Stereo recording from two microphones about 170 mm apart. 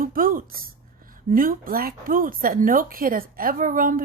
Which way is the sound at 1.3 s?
55° right (ahead or behind).